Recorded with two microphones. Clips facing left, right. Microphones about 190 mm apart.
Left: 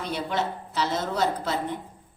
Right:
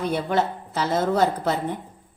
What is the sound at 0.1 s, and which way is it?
A woman's voice, 55° right (ahead or behind).